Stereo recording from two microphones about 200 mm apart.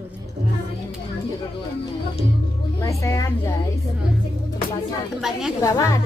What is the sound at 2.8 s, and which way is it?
Speech, 15° left (ahead or behind).